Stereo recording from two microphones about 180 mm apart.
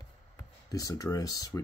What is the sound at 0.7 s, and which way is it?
Speech, 20° left (ahead or behind).